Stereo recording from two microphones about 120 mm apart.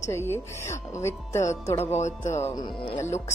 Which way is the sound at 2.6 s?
40° left (ahead or behind).